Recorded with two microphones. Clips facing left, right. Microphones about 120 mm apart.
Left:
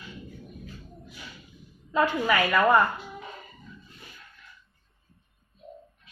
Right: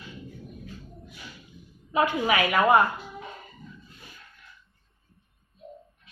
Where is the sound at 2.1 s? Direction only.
15° right (ahead or behind).